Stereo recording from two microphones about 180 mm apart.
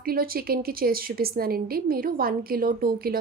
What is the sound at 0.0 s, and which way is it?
A woman's voice, 55° right (ahead or behind).